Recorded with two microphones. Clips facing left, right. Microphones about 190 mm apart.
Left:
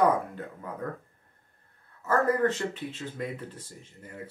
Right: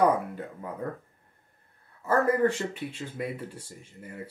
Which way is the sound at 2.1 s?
10° right (ahead or behind).